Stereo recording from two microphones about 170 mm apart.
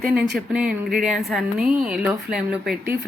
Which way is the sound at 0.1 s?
5° right (ahead or behind).